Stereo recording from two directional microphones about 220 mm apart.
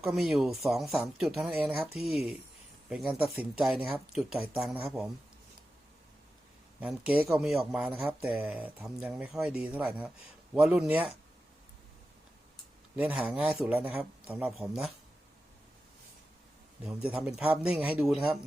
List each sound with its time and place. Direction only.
0.0 s speech: centre (ahead or behind)
6.8 s speech: 5° right (ahead or behind)
13.1 s speech: 5° right (ahead or behind)
16.8 s speech: 5° right (ahead or behind)